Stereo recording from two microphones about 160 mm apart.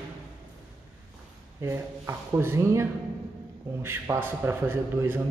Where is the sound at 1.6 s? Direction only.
15° right (ahead or behind).